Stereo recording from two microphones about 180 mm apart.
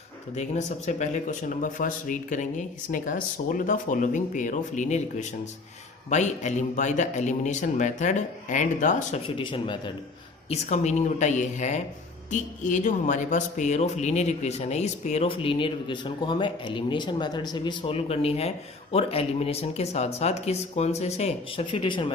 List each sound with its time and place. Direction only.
0.3 s speech: 40° left (ahead or behind)
6.1 s speech: 40° left (ahead or behind)
9.2 s speech: 30° left (ahead or behind)
10.5 s speech: 40° left (ahead or behind)